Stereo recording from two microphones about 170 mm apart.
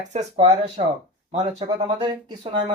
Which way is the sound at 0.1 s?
40° right (ahead or behind).